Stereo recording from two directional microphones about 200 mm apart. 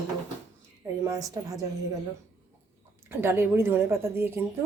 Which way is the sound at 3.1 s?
10° right (ahead or behind).